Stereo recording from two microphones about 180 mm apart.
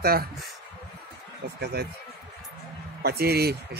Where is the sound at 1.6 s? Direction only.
60° right (ahead or behind).